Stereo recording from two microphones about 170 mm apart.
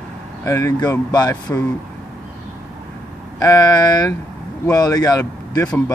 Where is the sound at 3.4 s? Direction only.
20° left (ahead or behind).